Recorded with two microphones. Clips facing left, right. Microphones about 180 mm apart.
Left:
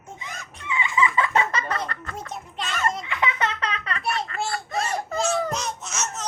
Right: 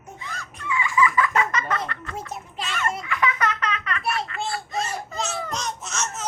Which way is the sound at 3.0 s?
25° left (ahead or behind).